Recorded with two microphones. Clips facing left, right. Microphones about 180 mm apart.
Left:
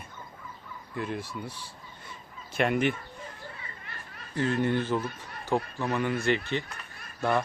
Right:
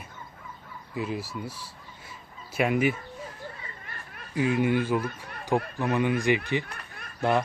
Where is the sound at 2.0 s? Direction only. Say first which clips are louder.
Even; 5° right (ahead or behind).